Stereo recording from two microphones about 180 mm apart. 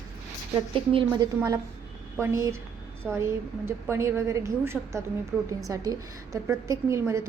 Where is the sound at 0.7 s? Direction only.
25° right (ahead or behind).